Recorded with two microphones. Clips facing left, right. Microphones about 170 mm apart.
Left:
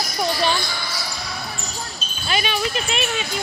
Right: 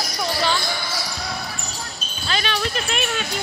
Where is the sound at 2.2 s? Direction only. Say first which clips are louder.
Left 1 dB; 10° left (ahead or behind).